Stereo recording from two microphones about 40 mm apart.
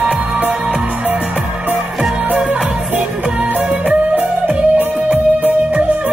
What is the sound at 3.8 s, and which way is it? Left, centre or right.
Music, right.